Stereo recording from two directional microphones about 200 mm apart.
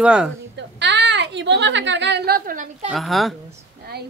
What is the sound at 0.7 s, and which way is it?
A woman's voice, 60° right (ahead or behind).